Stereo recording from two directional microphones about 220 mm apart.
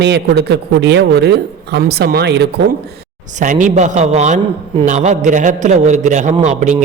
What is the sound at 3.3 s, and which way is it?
A man's voice, 35° right (ahead or behind).